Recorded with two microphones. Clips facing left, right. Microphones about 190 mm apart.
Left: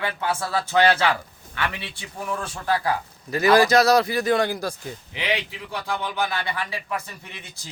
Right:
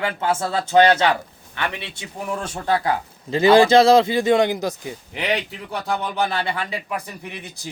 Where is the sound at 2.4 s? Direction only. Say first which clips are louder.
Right 4 dB; 25° right (ahead or behind).